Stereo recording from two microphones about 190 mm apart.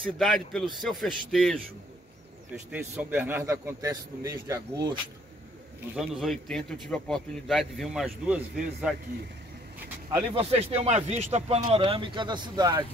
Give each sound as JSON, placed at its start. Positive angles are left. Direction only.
{"t": 0.0, "sound": "a man's voice", "side_deg": 0}
{"t": 2.7, "sound": "a man's voice", "side_deg": -10}
{"t": 5.9, "sound": "a man's voice", "side_deg": 0}
{"t": 10.3, "sound": "speech", "side_deg": -30}